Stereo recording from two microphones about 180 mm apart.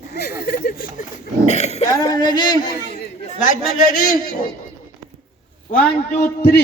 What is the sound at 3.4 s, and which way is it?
A man's voice, 50° left (ahead or behind).